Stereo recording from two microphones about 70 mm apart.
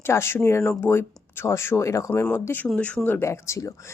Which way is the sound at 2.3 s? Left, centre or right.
Left.